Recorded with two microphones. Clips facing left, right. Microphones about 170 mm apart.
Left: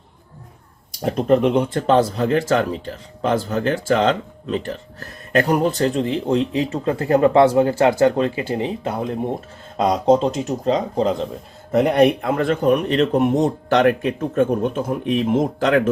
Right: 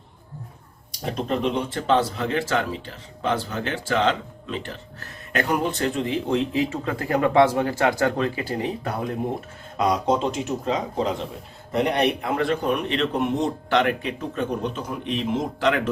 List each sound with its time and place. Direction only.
1.0 s speech: 50° left (ahead or behind)